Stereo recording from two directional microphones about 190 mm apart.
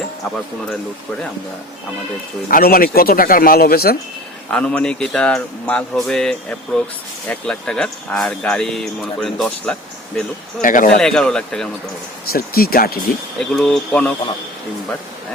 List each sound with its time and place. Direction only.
2.5 s speech: 50° left (ahead or behind)
4.5 s speech: 5° left (ahead or behind)
10.6 s speech: 45° left (ahead or behind)
11.0 s speech: 5° left (ahead or behind)
12.3 s speech: 50° left (ahead or behind)
13.4 s speech: centre (ahead or behind)